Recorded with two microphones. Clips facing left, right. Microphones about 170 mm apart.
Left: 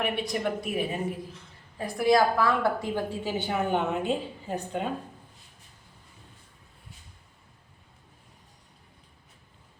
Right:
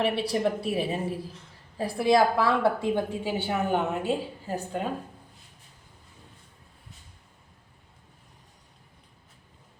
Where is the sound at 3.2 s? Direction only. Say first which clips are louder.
Right 1 dB; 10° right (ahead or behind).